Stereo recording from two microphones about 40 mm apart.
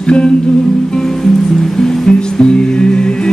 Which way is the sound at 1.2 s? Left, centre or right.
Centre.